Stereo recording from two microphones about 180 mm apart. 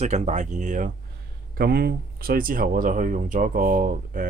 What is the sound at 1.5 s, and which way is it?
Speech, 60° right (ahead or behind).